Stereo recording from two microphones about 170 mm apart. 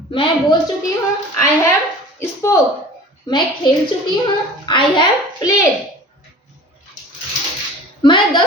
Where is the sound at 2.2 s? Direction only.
15° left (ahead or behind).